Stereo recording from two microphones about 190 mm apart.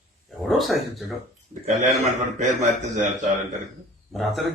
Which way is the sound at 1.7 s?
40° right (ahead or behind).